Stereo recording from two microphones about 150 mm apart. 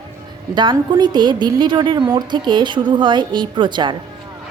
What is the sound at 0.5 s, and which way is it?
A woman's voice, 30° right (ahead or behind).